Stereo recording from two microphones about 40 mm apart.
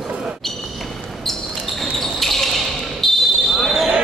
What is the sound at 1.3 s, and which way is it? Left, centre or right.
Basketball bounce, centre.